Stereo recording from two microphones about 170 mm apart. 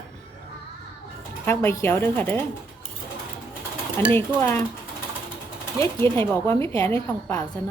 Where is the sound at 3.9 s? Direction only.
15° left (ahead or behind).